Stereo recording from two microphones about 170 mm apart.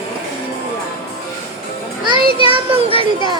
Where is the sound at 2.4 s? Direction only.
30° right (ahead or behind).